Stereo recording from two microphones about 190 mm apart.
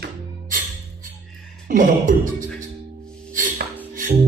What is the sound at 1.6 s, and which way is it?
Speech, 45° right (ahead or behind).